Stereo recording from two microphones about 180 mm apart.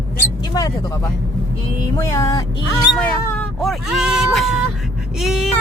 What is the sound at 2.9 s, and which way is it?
Speech, 10° left (ahead or behind).